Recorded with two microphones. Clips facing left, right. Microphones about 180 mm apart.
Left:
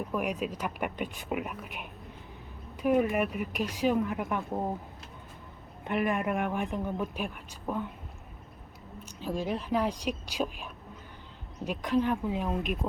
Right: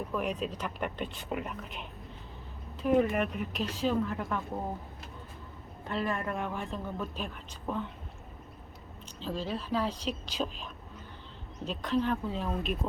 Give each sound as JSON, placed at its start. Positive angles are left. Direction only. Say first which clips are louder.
{"t": 0.1, "sound": "speech", "louder": "left 1 dB", "side_deg": 10}
{"t": 5.8, "sound": "speech", "louder": "left 4 dB", "side_deg": 15}
{"t": 9.2, "sound": "speech", "louder": "left 3 dB", "side_deg": 15}